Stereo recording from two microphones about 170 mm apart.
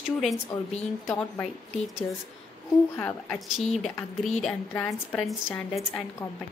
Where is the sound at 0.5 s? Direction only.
20° left (ahead or behind).